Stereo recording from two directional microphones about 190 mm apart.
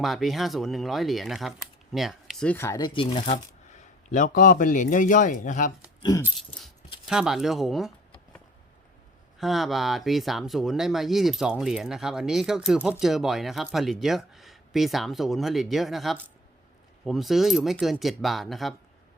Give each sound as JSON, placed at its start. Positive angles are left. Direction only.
{"t": 0.0, "sound": "speech", "side_deg": 0}
{"t": 6.0, "sound": "keys jangling", "side_deg": 20}
{"t": 7.1, "sound": "speech", "side_deg": -5}
{"t": 9.4, "sound": "speech", "side_deg": 0}